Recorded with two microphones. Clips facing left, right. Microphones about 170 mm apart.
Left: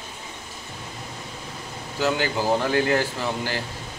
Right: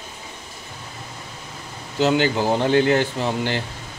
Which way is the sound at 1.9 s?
25° right (ahead or behind).